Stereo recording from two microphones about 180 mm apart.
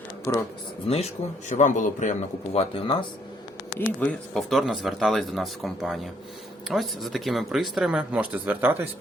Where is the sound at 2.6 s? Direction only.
30° left (ahead or behind).